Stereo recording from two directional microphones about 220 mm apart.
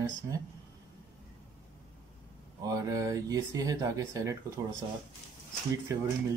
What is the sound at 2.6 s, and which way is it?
Speech, 15° right (ahead or behind).